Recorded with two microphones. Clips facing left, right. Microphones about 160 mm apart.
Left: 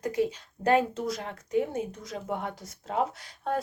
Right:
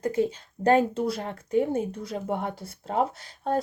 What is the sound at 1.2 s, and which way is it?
A woman's voice, 35° right (ahead or behind).